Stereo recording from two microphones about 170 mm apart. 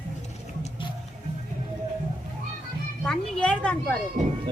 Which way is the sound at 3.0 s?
5° left (ahead or behind).